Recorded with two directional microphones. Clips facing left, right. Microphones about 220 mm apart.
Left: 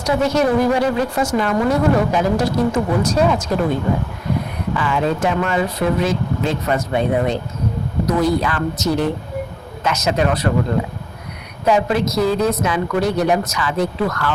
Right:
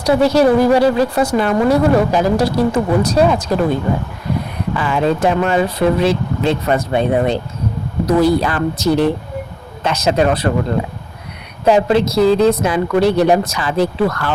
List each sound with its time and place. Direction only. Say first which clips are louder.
0.0 s speech: right 5 dB; 35° right (ahead or behind)
4.8 s speech: right 4 dB; 35° right (ahead or behind)
11.6 s speech: right 4 dB; 30° right (ahead or behind)